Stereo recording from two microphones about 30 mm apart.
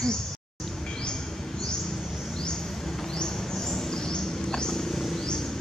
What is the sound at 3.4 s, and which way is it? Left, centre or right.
Wild animals, centre.